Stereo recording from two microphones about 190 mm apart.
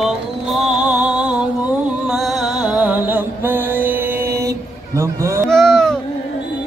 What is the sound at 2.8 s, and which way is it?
Mantra, 10° right (ahead or behind).